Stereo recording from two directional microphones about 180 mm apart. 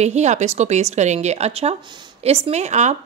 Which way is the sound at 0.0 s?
40° right (ahead or behind).